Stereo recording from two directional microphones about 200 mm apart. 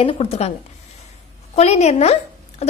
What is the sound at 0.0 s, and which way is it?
Speech, 30° left (ahead or behind).